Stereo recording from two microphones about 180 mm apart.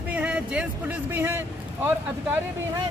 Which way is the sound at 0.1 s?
5° right (ahead or behind).